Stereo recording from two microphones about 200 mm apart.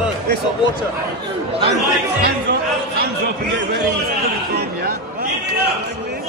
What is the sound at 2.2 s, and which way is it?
Chatter, 55° right (ahead or behind).